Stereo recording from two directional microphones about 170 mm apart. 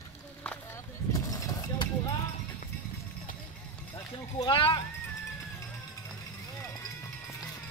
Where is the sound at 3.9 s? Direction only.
25° left (ahead or behind).